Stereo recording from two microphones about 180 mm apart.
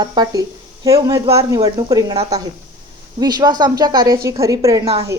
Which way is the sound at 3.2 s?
20° right (ahead or behind).